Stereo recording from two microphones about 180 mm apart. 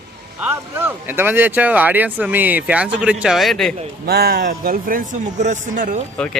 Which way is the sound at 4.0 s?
60° right (ahead or behind).